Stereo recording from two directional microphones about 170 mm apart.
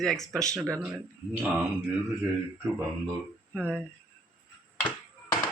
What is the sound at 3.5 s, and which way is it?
Speech, 5° right (ahead or behind).